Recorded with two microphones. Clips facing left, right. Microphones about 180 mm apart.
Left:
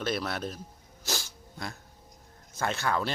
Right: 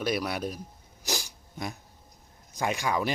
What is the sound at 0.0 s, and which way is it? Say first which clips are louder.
Speech: right 2 dB; 10° right (ahead or behind).